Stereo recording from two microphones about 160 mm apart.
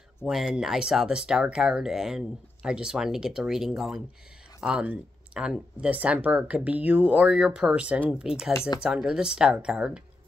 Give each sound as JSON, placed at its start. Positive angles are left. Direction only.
{"t": 0.2, "sound": "speech", "side_deg": -5}
{"t": 8.5, "sound": "speech", "side_deg": 15}
{"t": 8.8, "sound": "speech", "side_deg": -5}